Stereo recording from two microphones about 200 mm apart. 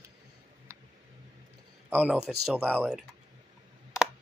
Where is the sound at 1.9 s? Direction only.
5° right (ahead or behind).